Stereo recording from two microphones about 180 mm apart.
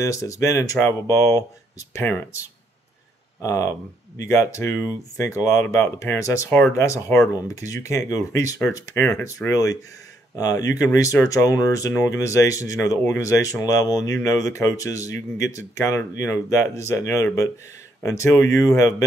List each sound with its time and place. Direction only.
0.0 s speech: 15° left (ahead or behind)
3.4 s speech: 15° left (ahead or behind)
10.3 s speech: 20° left (ahead or behind)